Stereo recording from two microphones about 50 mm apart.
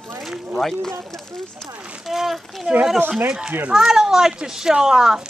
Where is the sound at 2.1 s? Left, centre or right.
Centre.